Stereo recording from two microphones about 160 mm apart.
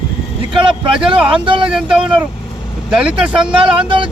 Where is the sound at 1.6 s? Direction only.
5° right (ahead or behind).